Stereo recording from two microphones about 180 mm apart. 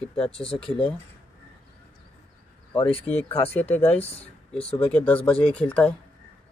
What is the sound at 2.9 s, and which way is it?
Speech, 35° left (ahead or behind).